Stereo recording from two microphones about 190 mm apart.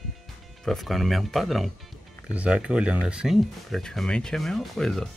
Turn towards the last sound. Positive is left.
turn(degrees=0)  # may be behind; listen again after turning